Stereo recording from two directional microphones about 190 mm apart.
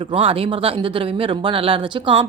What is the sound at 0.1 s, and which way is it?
Speech, 30° right (ahead or behind).